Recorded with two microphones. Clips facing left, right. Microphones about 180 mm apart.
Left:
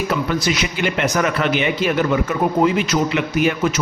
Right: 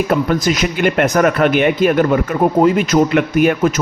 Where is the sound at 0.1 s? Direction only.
45° right (ahead or behind).